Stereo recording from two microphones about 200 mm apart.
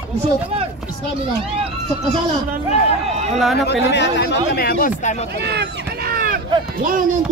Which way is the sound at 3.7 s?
60° left (ahead or behind).